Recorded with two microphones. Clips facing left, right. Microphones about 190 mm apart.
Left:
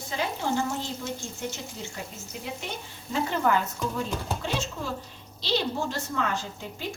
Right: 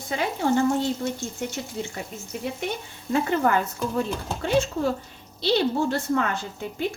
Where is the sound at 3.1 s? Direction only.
55° right (ahead or behind).